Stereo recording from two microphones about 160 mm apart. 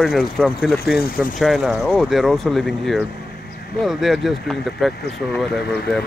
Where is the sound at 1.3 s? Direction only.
Centre (ahead or behind).